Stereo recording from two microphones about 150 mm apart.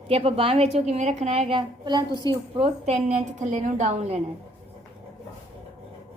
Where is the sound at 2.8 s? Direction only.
50° right (ahead or behind).